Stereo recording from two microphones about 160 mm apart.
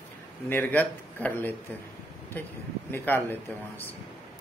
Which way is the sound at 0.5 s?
10° left (ahead or behind).